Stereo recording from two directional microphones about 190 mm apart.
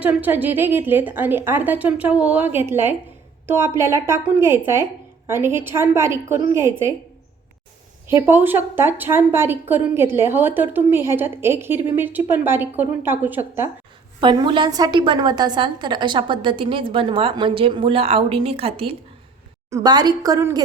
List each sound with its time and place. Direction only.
0.0 s a woman's voice: 10° right (ahead or behind)
8.0 s a woman's voice: 10° right (ahead or behind)
14.2 s a woman's voice: 25° right (ahead or behind)